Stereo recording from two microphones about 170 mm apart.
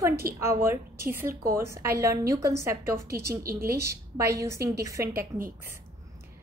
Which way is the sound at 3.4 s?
60° right (ahead or behind).